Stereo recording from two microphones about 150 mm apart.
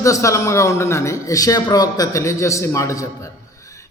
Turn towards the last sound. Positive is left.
turn(degrees=20)  # may be behind; listen again after turning